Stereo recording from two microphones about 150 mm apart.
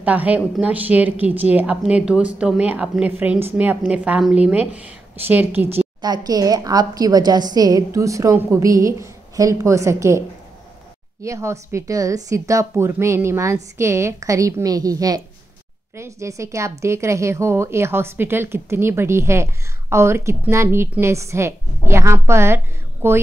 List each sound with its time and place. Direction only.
0.0 s speech: 10° right (ahead or behind)
5.9 s a woman's voice: 25° right (ahead or behind)
11.2 s a woman's voice: 20° right (ahead or behind)